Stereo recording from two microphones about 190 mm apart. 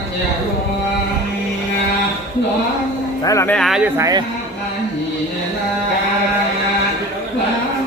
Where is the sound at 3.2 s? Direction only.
15° left (ahead or behind).